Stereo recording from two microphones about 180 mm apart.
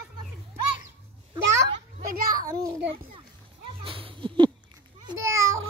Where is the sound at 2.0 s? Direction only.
50° right (ahead or behind).